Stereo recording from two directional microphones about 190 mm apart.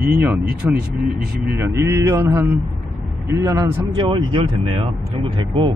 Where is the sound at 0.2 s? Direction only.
10° right (ahead or behind).